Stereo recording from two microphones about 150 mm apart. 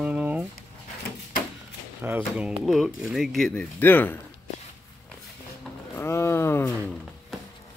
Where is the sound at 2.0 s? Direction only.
10° right (ahead or behind); by 4.1 s 15° left (ahead or behind).